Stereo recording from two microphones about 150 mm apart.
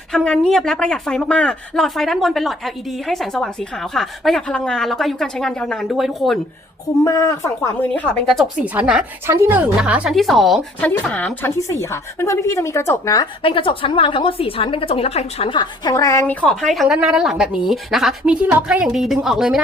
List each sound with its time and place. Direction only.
0.1 s speech: centre (ahead or behind)
7.0 s speech: 20° left (ahead or behind)
7.9 s speech: 5° left (ahead or behind)
8.5 s a woman's voice: 10° right (ahead or behind); by 13.2 s 20° left (ahead or behind)
13.4 s a woman's voice: 35° left (ahead or behind)
16.2 s speech: 10° left (ahead or behind)